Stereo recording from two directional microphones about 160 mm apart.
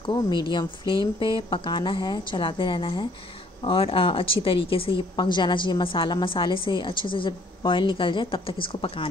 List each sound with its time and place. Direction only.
0.0 s speech: 25° left (ahead or behind)